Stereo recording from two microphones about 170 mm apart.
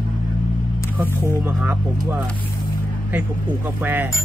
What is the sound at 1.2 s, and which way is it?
Speech, 15° right (ahead or behind).